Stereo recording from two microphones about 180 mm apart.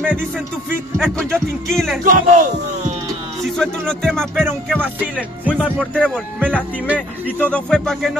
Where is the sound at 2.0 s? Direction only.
50° right (ahead or behind).